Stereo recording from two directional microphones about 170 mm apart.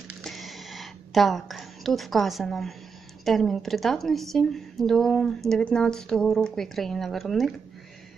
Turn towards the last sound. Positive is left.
turn(degrees=0)  # may be behind; listen again after turning